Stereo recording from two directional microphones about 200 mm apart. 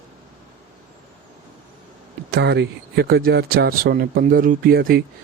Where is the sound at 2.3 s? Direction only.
55° right (ahead or behind).